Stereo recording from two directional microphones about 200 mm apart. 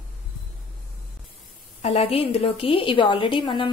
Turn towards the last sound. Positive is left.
turn(degrees=25)  # may be behind; listen again after turning